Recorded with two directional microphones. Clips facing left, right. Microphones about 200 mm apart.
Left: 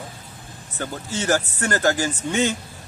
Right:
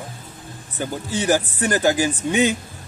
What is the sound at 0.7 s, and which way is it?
A man's voice, 15° right (ahead or behind).